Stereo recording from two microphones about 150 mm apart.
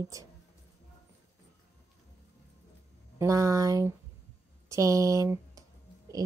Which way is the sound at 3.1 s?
20° right (ahead or behind).